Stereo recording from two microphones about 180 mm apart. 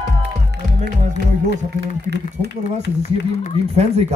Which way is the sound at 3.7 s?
35° right (ahead or behind).